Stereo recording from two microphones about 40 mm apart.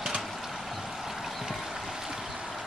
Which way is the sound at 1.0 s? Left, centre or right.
Centre.